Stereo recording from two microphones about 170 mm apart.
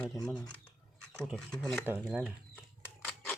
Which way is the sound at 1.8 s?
10° right (ahead or behind).